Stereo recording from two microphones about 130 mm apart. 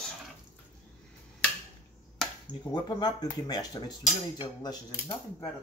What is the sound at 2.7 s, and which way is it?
Speech, 30° left (ahead or behind).